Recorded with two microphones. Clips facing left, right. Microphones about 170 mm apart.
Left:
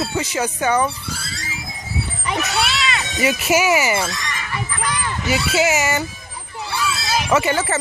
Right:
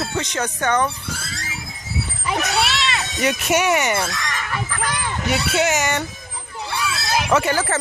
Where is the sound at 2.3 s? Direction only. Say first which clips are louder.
Right 1 dB; centre (ahead or behind).